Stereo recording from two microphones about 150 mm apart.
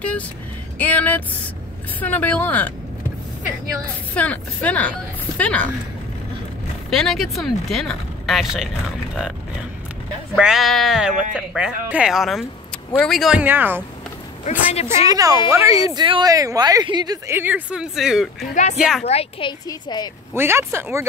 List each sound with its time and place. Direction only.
0.7 s a woman's voice: 10° left (ahead or behind)
4.1 s a woman's voice: 10° left (ahead or behind)
6.9 s speech: centre (ahead or behind)
10.3 s speech: 5° right (ahead or behind)
13.4 s speech: 15° right (ahead or behind)
14.7 s a woman's voice: 45° left (ahead or behind)
15.0 s speech: 25° right (ahead or behind)
17.4 s speech: 10° right (ahead or behind)
18.5 s speech: 55° left (ahead or behind)
18.8 s speech: 5° right (ahead or behind)
19.0 s a woman's voice: 45° left (ahead or behind)
19.7 s speech: 25° left (ahead or behind)
20.3 s speech: 15° right (ahead or behind)